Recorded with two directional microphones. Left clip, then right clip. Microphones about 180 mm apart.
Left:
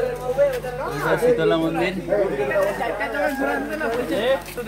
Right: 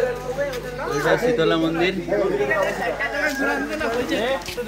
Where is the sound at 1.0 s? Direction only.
Centre (ahead or behind).